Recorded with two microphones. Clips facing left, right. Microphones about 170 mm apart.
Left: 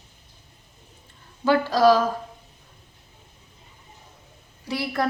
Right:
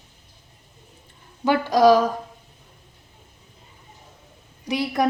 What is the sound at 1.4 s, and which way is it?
Speech, 15° right (ahead or behind).